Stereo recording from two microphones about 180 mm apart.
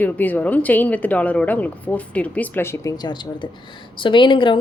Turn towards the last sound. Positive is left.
turn(degrees=25)  # may be behind; listen again after turning